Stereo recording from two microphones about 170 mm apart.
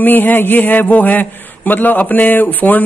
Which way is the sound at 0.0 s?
10° left (ahead or behind).